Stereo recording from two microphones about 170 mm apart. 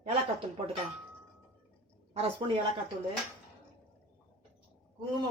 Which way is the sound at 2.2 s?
30° right (ahead or behind).